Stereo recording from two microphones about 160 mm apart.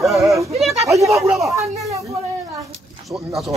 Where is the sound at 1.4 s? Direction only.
20° right (ahead or behind).